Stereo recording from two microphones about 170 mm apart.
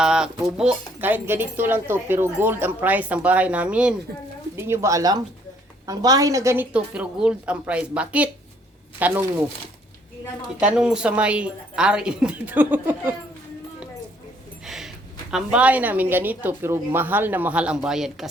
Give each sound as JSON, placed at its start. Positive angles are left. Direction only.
{"t": 0.0, "sound": "a woman's voice", "side_deg": -5}
{"t": 6.7, "sound": "speech", "side_deg": -5}
{"t": 10.6, "sound": "speech", "side_deg": -5}
{"t": 14.6, "sound": "music", "side_deg": 0}
{"t": 15.3, "sound": "speech", "side_deg": -5}